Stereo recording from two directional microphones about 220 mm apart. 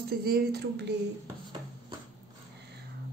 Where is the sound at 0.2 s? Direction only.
45° right (ahead or behind).